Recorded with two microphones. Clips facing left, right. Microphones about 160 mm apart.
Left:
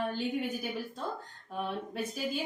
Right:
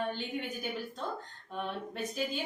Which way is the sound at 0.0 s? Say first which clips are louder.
Left 3 dB; 5° left (ahead or behind).